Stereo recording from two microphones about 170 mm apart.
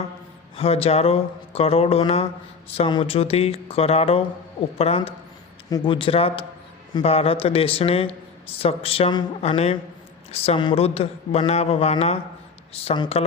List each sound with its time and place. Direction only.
0.5 s speech: 35° left (ahead or behind)